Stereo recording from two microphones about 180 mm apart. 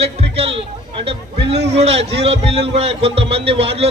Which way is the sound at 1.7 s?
35° right (ahead or behind).